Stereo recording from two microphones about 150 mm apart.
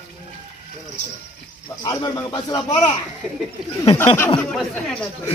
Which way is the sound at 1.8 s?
25° left (ahead or behind).